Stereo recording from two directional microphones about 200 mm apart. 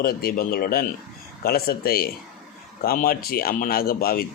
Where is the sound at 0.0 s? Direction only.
50° left (ahead or behind).